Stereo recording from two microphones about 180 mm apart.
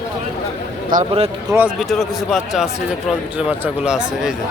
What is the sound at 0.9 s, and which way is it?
Speech, 50° right (ahead or behind).